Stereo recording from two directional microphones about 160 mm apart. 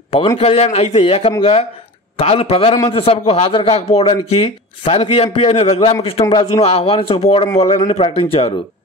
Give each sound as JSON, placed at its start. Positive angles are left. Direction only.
{"t": 0.4, "sound": "a man's voice", "side_deg": 40}
{"t": 6.2, "sound": "speech", "side_deg": 25}
{"t": 6.6, "sound": "a man's voice", "side_deg": 40}